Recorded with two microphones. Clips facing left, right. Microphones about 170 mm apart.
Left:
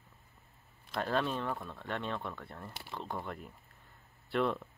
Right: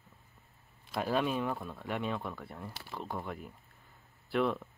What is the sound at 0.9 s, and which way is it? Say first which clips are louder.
Speech: right 2 dB; 5° right (ahead or behind).